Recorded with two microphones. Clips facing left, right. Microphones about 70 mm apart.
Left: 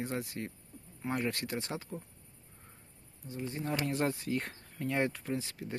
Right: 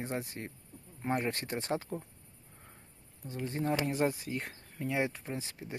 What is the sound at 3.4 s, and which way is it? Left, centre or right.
Speech, right.